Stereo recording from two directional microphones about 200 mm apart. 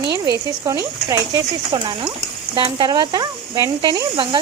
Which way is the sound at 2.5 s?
20° right (ahead or behind).